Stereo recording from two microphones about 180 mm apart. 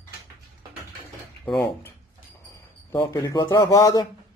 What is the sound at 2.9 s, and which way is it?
Speech, 20° left (ahead or behind).